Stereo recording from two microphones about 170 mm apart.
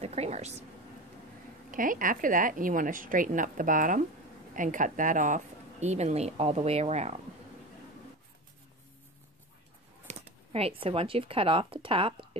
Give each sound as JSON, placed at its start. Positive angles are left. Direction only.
{"t": 0.0, "sound": "speech", "side_deg": -40}
{"t": 1.7, "sound": "a woman's voice", "side_deg": -55}
{"t": 10.0, "sound": "a sound", "side_deg": -35}
{"t": 10.8, "sound": "speech", "side_deg": -35}